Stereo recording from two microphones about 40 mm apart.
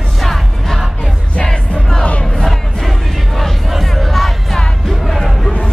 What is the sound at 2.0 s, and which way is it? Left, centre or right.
Music, left.